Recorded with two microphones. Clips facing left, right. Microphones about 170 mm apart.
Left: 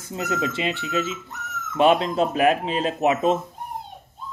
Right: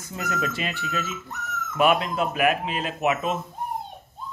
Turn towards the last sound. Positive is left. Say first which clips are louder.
# left 5 dB
turn(degrees=30)  # may be behind; listen again after turning